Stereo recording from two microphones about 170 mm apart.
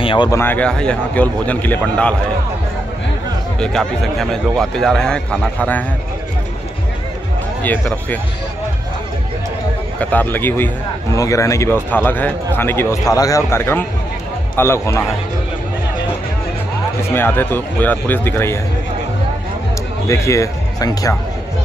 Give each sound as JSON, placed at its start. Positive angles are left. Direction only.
{"t": 0.0, "sound": "a sound", "side_deg": 30}
{"t": 0.3, "sound": "a man's voice", "side_deg": 10}
{"t": 3.5, "sound": "a man's voice", "side_deg": 5}
{"t": 7.6, "sound": "a man's voice", "side_deg": 10}
{"t": 9.9, "sound": "a man's voice", "side_deg": 10}
{"t": 17.1, "sound": "a man's voice", "side_deg": 10}
{"t": 20.1, "sound": "a man's voice", "side_deg": 20}